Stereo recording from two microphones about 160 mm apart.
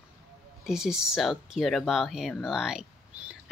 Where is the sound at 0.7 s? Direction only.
5° right (ahead or behind).